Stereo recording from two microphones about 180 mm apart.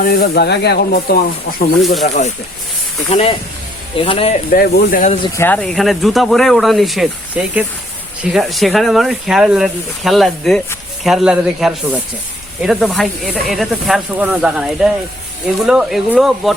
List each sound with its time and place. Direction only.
0.0 s speech: 55° left (ahead or behind)
1.8 s speech: centre (ahead or behind)
3.1 s speech: 35° left (ahead or behind)
4.5 s speech: 55° left (ahead or behind)
5.4 s speech: 10° left (ahead or behind)